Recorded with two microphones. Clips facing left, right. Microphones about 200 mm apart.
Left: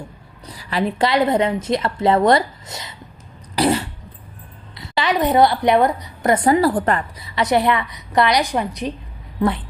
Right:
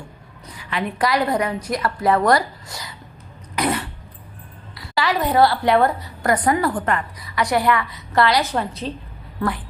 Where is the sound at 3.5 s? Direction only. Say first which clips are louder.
Left 4 dB; 30° left (ahead or behind).